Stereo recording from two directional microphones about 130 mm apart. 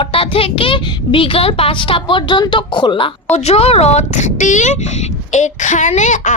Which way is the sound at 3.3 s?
50° left (ahead or behind).